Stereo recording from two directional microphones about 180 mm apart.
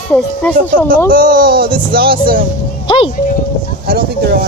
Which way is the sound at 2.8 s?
25° left (ahead or behind).